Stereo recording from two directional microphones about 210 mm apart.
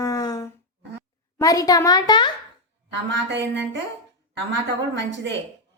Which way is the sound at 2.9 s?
55° right (ahead or behind).